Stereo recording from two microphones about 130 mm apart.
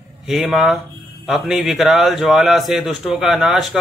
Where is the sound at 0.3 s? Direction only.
Centre (ahead or behind).